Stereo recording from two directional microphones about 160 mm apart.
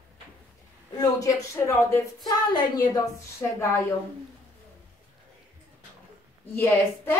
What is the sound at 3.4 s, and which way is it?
Speech, 10° left (ahead or behind).